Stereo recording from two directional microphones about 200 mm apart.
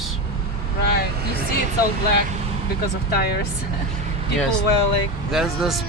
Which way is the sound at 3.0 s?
50° left (ahead or behind).